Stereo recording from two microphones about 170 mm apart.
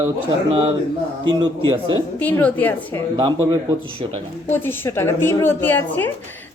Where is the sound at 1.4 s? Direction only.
30° right (ahead or behind).